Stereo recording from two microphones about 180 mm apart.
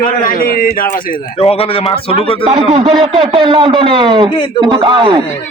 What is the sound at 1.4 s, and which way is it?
A man's voice, 35° left (ahead or behind).